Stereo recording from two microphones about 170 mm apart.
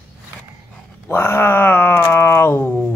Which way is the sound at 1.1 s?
15° left (ahead or behind).